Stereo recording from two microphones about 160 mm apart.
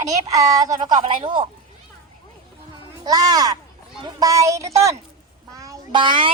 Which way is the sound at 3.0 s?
25° right (ahead or behind).